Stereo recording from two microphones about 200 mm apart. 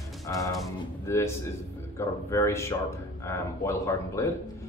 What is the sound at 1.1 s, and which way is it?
Speech, 15° left (ahead or behind).